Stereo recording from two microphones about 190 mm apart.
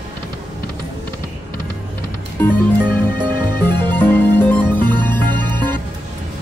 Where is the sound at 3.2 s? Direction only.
25° right (ahead or behind).